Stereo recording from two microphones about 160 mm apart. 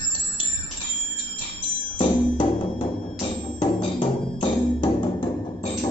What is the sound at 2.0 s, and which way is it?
Music, 30° left (ahead or behind).